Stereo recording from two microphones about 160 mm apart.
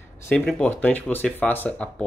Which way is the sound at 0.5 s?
10° left (ahead or behind).